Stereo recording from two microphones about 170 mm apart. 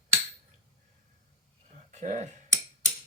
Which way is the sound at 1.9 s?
45° right (ahead or behind).